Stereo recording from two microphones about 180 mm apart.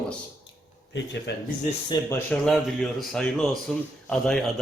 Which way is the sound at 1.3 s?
70° left (ahead or behind).